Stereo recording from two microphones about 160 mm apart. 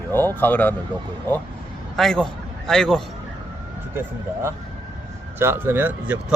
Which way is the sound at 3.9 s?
15° right (ahead or behind).